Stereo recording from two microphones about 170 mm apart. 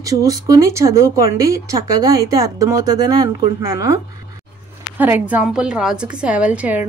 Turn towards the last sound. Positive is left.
turn(degrees=-10)  # may be behind; listen again after turning